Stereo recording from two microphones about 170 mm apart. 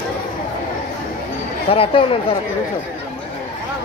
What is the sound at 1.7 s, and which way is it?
Speech, 35° left (ahead or behind).